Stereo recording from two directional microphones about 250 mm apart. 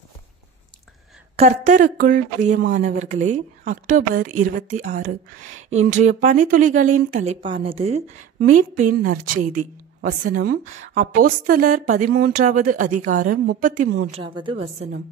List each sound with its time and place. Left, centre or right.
1.3 s a woman's voice: right
14.1 s a woman's voice: centre